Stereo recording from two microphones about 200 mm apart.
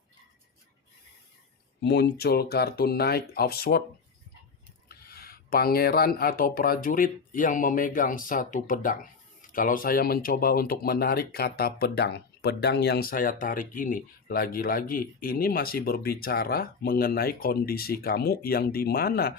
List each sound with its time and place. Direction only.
1.8 s speech: 55° left (ahead or behind)
4.9 s speech: 50° left (ahead or behind)